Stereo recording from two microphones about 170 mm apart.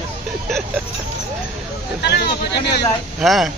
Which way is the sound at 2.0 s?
75° left (ahead or behind).